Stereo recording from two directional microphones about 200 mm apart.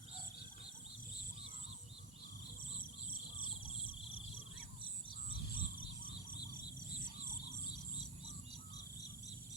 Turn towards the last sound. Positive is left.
turn(degrees=20)  # may be behind; listen again after turning